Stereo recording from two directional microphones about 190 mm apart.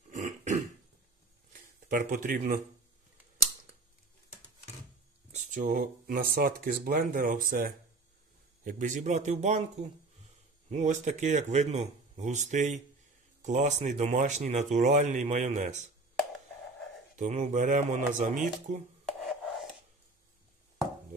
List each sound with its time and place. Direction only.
0.1 s burping: 40° right (ahead or behind)
1.5 s speech: 45° right (ahead or behind)
5.3 s speech: 40° right (ahead or behind)
17.2 s speech: 40° right (ahead or behind)